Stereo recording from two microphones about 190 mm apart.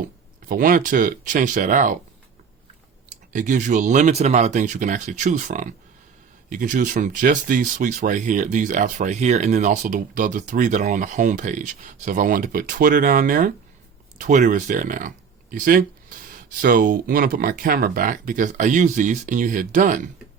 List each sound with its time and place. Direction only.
0.4 s speech: 45° right (ahead or behind)
3.1 s speech: 40° right (ahead or behind)